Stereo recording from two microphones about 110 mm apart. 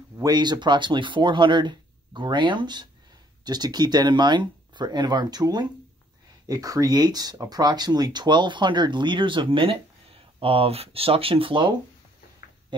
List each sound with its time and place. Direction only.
0.2 s speech: 40° right (ahead or behind)